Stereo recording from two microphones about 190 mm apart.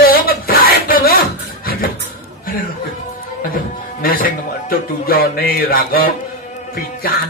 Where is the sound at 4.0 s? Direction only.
50° left (ahead or behind).